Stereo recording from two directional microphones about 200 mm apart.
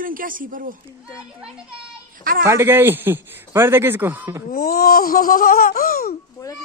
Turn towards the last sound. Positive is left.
turn(degrees=45)  # may be behind; listen again after turning